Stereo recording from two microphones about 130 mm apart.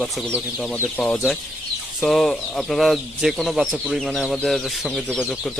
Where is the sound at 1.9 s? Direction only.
5° left (ahead or behind).